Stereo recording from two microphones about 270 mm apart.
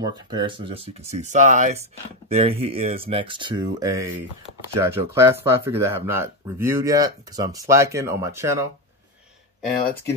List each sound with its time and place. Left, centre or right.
0.0 s speech: centre